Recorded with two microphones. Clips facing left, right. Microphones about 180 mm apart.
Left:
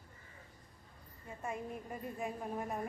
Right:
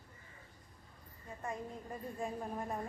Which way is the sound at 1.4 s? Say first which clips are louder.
Left 1 dB; 15° left (ahead or behind).